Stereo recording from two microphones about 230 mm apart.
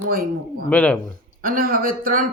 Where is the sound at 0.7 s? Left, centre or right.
Centre.